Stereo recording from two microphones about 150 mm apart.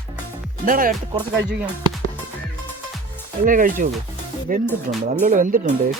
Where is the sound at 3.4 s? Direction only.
65° right (ahead or behind).